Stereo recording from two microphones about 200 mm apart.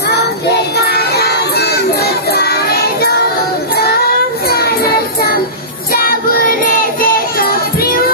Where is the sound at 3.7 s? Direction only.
50° left (ahead or behind).